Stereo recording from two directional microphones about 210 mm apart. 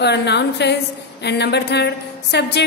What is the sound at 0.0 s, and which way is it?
A woman's voice, 55° left (ahead or behind).